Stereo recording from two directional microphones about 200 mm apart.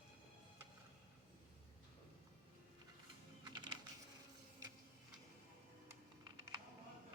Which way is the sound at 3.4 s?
20° right (ahead or behind).